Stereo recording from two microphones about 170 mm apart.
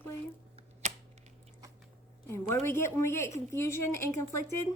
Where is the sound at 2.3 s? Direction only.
15° left (ahead or behind).